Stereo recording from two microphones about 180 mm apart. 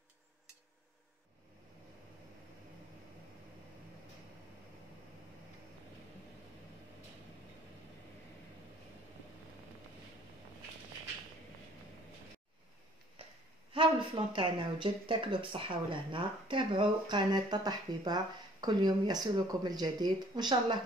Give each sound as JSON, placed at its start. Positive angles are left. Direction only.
{"t": 13.7, "sound": "speech", "side_deg": -25}